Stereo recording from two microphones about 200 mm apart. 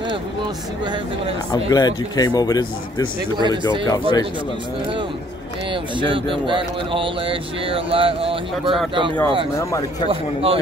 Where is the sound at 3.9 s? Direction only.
20° left (ahead or behind).